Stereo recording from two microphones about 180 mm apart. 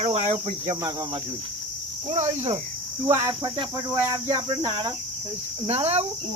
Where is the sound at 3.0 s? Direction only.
15° right (ahead or behind).